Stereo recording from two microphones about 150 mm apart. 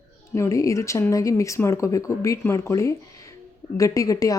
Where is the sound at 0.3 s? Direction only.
20° left (ahead or behind).